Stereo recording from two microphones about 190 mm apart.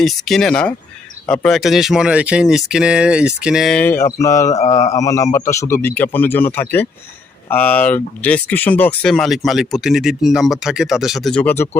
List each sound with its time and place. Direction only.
0.0 s speech: centre (ahead or behind)